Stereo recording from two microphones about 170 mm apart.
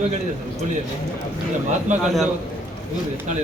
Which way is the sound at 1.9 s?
45° right (ahead or behind).